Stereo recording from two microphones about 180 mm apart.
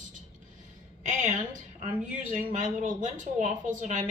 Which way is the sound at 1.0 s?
45° right (ahead or behind).